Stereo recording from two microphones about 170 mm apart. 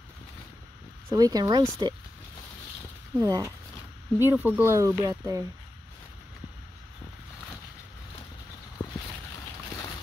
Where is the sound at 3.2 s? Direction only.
20° right (ahead or behind).